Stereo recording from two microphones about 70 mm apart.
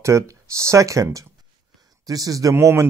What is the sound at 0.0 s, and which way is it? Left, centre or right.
Speech, right.